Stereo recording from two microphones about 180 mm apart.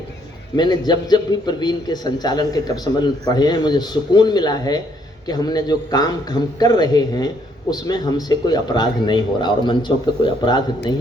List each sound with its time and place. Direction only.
0.5 s a man's voice: 25° left (ahead or behind)